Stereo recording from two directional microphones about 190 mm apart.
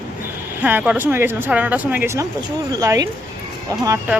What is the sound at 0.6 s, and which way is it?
Speech, 10° right (ahead or behind).